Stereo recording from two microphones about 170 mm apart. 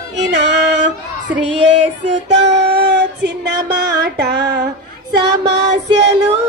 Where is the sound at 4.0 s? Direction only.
90° right.